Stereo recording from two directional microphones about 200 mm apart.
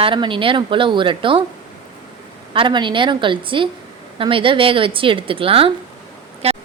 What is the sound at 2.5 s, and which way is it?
A woman's voice, 25° right (ahead or behind).